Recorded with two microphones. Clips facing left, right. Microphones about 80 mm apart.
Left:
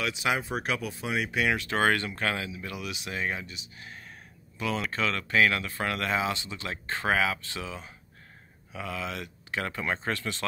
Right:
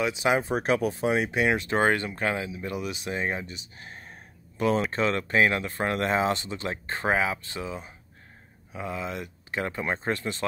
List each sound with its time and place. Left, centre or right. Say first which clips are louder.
0.0 s speech: right 5 dB; right
6.7 s speech: right 1 dB; right